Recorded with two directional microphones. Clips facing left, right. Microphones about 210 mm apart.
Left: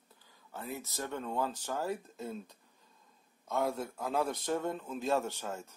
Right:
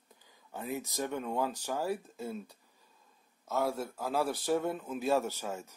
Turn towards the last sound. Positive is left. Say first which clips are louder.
# right 2 dB
turn(degrees=-10)  # may be behind; listen again after turning